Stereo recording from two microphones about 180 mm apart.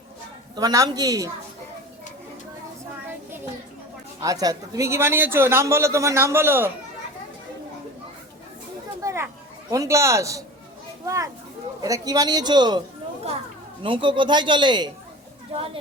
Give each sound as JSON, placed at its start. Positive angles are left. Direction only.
{"t": 0.5, "sound": "a man's voice", "side_deg": -20}
{"t": 4.2, "sound": "a man's voice", "side_deg": -20}
{"t": 9.0, "sound": "a child's voice", "side_deg": -15}
{"t": 13.8, "sound": "a man's voice", "side_deg": -30}